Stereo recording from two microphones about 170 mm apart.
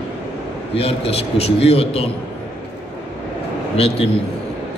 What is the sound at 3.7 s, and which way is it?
Speech, 35° left (ahead or behind).